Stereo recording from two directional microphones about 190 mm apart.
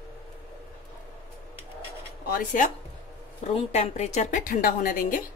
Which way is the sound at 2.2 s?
45° left (ahead or behind).